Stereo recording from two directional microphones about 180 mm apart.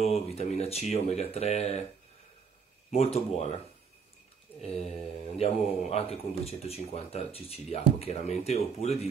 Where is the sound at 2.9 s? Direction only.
35° left (ahead or behind).